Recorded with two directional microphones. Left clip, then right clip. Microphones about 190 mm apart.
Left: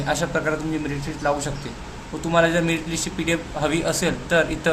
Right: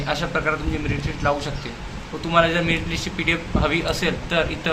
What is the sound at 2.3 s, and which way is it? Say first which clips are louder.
A man's voice: right 1 dB; 30° left (ahead or behind).